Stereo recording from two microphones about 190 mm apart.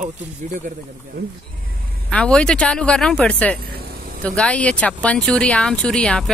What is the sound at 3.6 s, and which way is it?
Vehicle, 55° right (ahead or behind).